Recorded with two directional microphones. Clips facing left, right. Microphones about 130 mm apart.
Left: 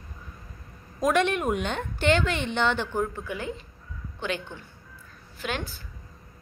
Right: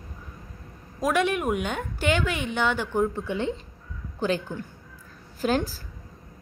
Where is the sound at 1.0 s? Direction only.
5° right (ahead or behind).